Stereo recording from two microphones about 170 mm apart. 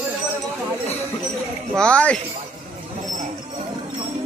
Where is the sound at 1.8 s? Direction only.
5° left (ahead or behind).